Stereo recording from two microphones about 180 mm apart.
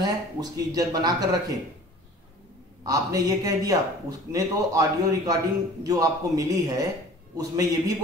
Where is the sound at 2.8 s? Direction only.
20° right (ahead or behind).